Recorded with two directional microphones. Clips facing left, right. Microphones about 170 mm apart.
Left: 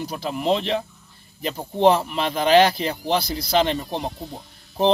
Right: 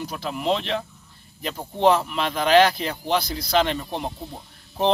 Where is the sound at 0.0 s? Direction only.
30° left (ahead or behind).